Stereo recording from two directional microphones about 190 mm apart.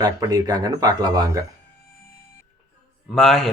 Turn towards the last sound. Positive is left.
turn(degrees=0)  # may be behind; listen again after turning